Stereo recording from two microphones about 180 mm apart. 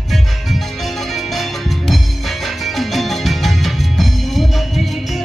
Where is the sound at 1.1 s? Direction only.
Centre (ahead or behind).